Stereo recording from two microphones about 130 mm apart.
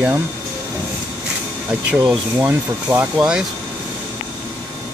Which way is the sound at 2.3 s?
15° right (ahead or behind).